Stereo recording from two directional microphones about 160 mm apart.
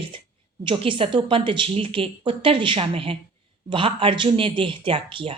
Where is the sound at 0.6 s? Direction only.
30° right (ahead or behind).